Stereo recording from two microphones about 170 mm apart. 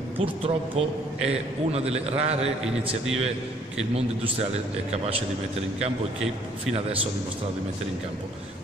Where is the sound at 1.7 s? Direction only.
35° right (ahead or behind).